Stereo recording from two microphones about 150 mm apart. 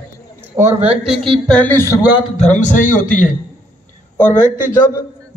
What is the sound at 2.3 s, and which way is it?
Speech, 50° left (ahead or behind).